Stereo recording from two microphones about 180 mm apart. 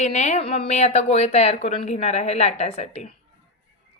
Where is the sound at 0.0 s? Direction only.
40° left (ahead or behind).